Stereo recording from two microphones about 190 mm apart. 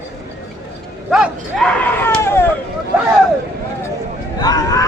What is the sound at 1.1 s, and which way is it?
Speech, centre (ahead or behind).